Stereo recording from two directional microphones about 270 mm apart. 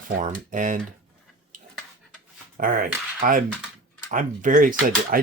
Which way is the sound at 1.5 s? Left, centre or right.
Right.